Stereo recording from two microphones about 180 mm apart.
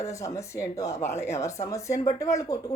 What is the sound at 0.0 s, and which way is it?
Speech, 15° left (ahead or behind).